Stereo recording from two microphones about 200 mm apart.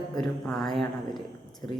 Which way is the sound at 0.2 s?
Centre (ahead or behind).